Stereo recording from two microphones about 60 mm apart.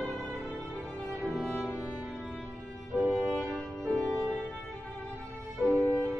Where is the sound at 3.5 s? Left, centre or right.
Left.